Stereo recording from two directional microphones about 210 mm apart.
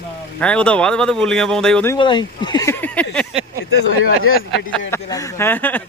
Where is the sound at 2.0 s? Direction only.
20° left (ahead or behind); by 3.4 s 5° left (ahead or behind).